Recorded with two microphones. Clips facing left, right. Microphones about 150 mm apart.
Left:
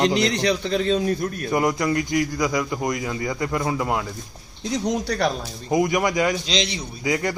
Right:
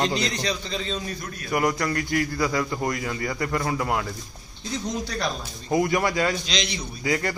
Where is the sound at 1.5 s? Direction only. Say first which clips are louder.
Left 2 dB; 20° left (ahead or behind).